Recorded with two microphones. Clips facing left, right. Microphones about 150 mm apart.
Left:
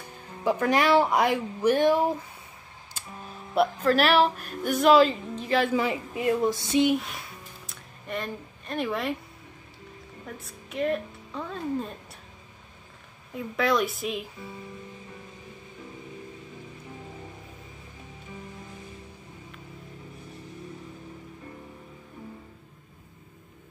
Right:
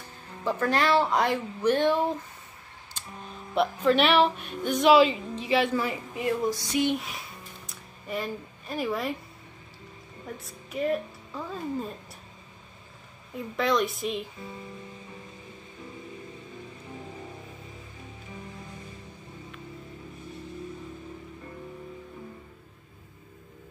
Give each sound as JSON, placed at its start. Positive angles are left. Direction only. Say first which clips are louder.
{"t": 0.4, "sound": "speech", "louder": "left 2 dB", "side_deg": 15}
{"t": 2.9, "sound": "music", "louder": "even", "side_deg": 5}
{"t": 6.5, "sound": "a sound", "louder": "left 4 dB", "side_deg": 25}
{"t": 6.9, "sound": "music", "louder": "left 3 dB", "side_deg": 0}
{"t": 10.4, "sound": "a woman's voice", "louder": "left 1 dB", "side_deg": 0}
{"t": 13.3, "sound": "speech", "louder": "left 1 dB", "side_deg": 0}